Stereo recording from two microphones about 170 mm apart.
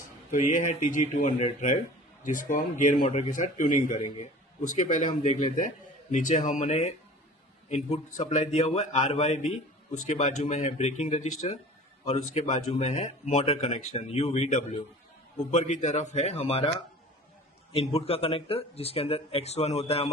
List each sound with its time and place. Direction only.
0.3 s speech: 50° left (ahead or behind)